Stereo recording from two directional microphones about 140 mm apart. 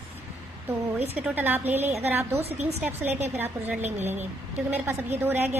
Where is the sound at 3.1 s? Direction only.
50° right (ahead or behind).